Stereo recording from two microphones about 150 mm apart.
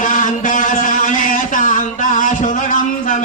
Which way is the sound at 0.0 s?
60° left (ahead or behind).